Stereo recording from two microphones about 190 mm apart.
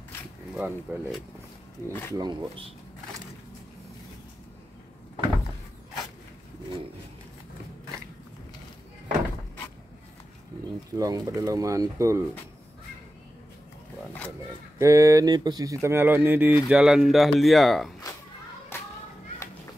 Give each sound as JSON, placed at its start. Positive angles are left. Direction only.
{"t": 0.6, "sound": "speech", "side_deg": -10}
{"t": 2.1, "sound": "speech", "side_deg": -25}
{"t": 11.0, "sound": "speech", "side_deg": -20}
{"t": 14.8, "sound": "speech", "side_deg": -15}
{"t": 18.7, "sound": "children playing", "side_deg": 10}